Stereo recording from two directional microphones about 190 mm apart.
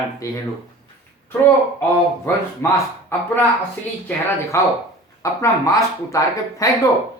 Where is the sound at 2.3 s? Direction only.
15° left (ahead or behind).